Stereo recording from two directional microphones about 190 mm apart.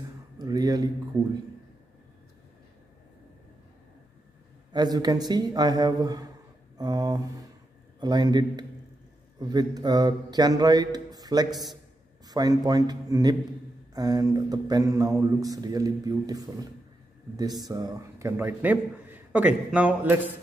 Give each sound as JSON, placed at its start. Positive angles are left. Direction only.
{"t": 0.4, "sound": "a sound", "side_deg": -20}
{"t": 4.7, "sound": "speech", "side_deg": -20}
{"t": 17.6, "sound": "a man's voice", "side_deg": -20}